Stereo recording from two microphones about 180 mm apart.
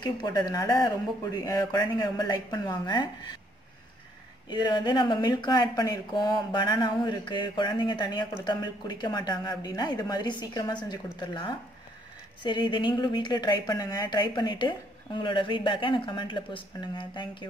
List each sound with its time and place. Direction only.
0.0 s speech: 20° left (ahead or behind)
4.5 s speech: 25° left (ahead or behind)